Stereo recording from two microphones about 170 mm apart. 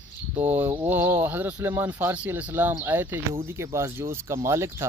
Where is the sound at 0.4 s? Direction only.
10° right (ahead or behind).